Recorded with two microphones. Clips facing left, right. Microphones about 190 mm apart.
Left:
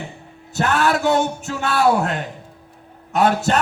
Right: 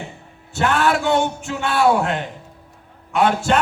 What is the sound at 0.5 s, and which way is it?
A man's voice, 40° left (ahead or behind).